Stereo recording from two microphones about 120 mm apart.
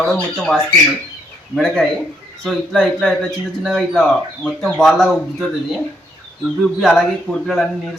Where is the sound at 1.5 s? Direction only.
5° left (ahead or behind).